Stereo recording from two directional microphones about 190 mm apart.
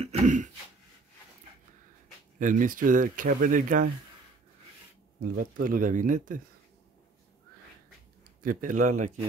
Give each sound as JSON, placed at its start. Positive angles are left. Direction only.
{"t": 0.0, "sound": "a sound", "side_deg": -40}
{"t": 2.3, "sound": "speech", "side_deg": -45}
{"t": 5.2, "sound": "speech", "side_deg": -50}
{"t": 8.2, "sound": "speech", "side_deg": -45}